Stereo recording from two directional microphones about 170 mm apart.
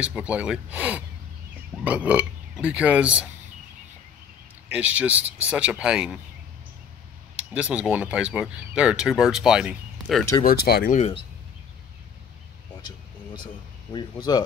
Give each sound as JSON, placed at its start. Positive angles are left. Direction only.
{"t": 0.0, "sound": "speech", "side_deg": -10}
{"t": 4.6, "sound": "speech", "side_deg": -10}
{"t": 7.3, "sound": "speech", "side_deg": -10}
{"t": 10.4, "sound": "speech", "side_deg": 65}
{"t": 11.0, "sound": "speech", "side_deg": 35}
{"t": 12.8, "sound": "a sound", "side_deg": 25}
{"t": 13.9, "sound": "speech", "side_deg": 25}